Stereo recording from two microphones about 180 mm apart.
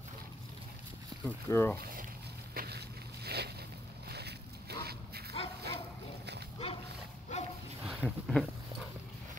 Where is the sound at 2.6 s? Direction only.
60° right (ahead or behind).